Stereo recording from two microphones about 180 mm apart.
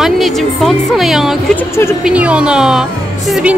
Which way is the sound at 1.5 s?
15° left (ahead or behind).